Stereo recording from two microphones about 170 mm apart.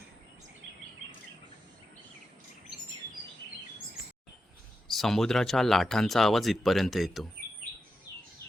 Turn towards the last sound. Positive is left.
turn(degrees=0)  # may be behind; listen again after turning